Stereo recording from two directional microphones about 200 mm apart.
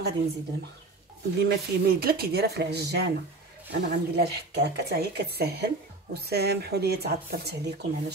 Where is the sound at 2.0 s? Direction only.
50° right (ahead or behind).